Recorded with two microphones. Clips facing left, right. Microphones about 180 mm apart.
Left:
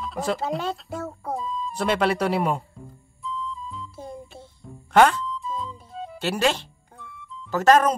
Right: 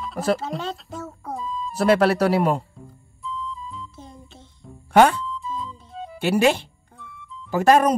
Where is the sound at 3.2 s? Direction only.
Centre (ahead or behind).